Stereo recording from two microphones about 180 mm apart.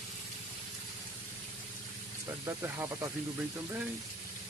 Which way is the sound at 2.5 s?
15° right (ahead or behind).